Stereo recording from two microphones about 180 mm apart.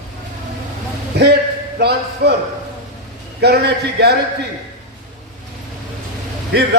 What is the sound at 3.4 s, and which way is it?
Speech, 65° right (ahead or behind).